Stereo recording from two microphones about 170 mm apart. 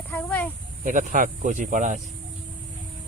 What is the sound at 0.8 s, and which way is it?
Speech, 50° right (ahead or behind).